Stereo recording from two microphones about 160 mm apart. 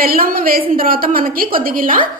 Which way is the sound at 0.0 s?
65° right (ahead or behind).